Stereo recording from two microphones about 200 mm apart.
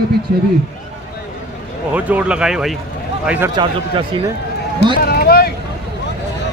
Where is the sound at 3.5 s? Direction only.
25° right (ahead or behind).